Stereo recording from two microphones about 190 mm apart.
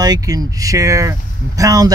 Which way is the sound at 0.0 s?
20° right (ahead or behind).